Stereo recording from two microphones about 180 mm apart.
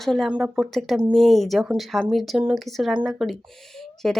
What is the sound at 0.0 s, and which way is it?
Speech, centre (ahead or behind).